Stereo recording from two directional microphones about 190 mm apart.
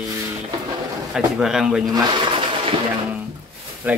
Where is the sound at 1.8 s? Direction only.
20° right (ahead or behind).